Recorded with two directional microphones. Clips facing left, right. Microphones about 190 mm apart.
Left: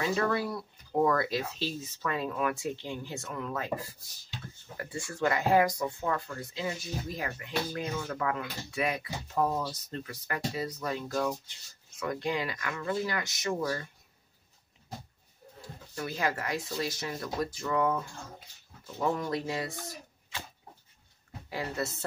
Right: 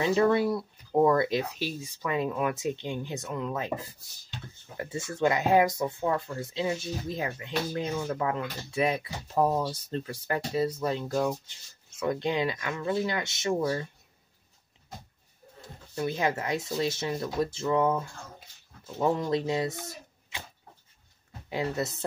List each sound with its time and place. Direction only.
0.0 s speech: 20° right (ahead or behind)
15.9 s speech: 20° right (ahead or behind)
21.5 s speech: 20° right (ahead or behind)